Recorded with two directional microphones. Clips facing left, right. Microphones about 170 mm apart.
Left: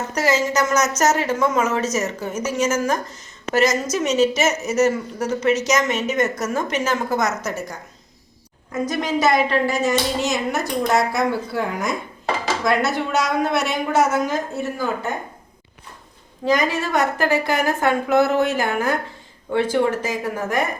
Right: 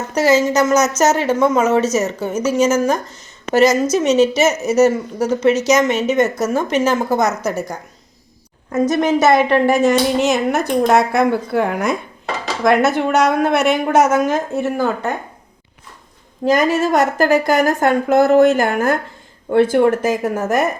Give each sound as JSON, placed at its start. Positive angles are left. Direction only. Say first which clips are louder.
{"t": 0.1, "sound": "a woman's voice", "louder": "right 7 dB", "side_deg": -30}
{"t": 8.7, "sound": "a woman's voice", "louder": "right 7 dB", "side_deg": -45}
{"t": 12.6, "sound": "a woman's voice", "louder": "right 8 dB", "side_deg": -50}
{"t": 16.5, "sound": "a woman's voice", "louder": "right 5 dB", "side_deg": -45}